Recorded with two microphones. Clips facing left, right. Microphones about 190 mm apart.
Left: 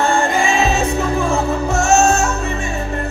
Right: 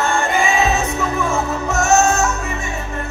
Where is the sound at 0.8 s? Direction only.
30° left (ahead or behind).